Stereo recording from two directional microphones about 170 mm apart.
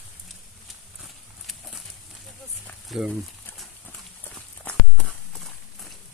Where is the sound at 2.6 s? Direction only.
Centre (ahead or behind).